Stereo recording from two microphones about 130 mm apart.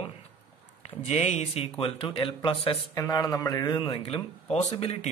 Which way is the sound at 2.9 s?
25° left (ahead or behind).